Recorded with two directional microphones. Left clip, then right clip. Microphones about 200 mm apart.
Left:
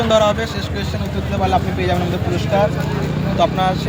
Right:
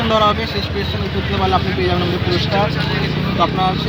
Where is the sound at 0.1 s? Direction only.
20° left (ahead or behind).